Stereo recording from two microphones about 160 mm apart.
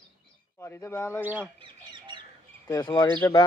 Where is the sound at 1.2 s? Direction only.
10° right (ahead or behind).